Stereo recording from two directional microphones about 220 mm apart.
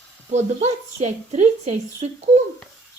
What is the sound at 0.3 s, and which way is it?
Speech, 30° right (ahead or behind).